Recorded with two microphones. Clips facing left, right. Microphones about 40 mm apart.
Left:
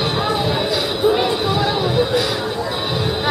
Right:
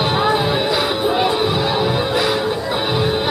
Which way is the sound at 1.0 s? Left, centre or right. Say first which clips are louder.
Left 3 dB; centre.